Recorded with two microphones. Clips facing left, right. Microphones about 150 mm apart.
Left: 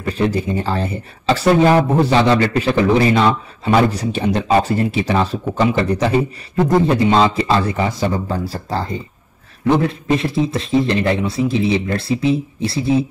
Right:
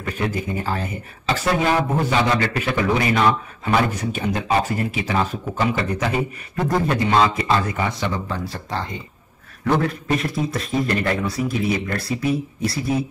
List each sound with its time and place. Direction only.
0.0 s speech: 35° left (ahead or behind)
9.7 s a man's voice: 25° left (ahead or behind)